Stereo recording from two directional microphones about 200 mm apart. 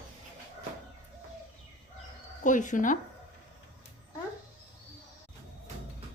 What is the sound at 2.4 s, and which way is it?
Speech, 40° left (ahead or behind).